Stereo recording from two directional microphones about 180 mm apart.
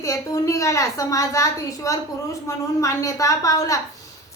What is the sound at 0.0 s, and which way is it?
A woman's voice, 15° left (ahead or behind).